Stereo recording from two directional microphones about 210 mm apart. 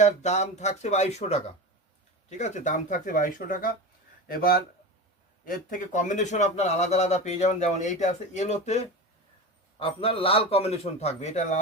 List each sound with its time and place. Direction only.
0.0 s a man's voice: 35° left (ahead or behind)